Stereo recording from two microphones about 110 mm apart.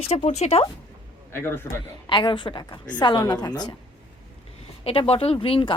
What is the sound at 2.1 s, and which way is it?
A woman's voice, 50° left (ahead or behind).